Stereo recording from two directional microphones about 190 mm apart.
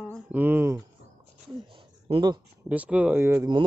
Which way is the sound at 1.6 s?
25° right (ahead or behind).